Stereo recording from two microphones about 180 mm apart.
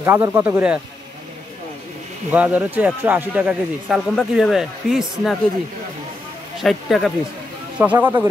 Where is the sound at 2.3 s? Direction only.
5° right (ahead or behind).